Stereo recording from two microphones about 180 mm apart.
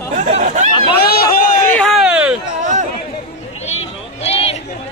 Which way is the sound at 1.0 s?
60° left (ahead or behind).